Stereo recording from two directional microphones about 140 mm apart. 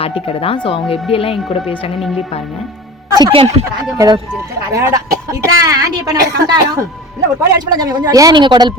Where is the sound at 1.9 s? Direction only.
Centre (ahead or behind).